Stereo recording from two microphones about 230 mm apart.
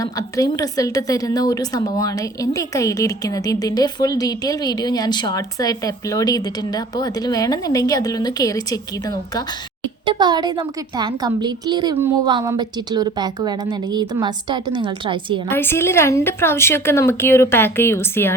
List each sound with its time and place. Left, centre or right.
0.0 s a woman's voice: centre
10.1 s a woman's voice: centre
15.4 s a woman's voice: centre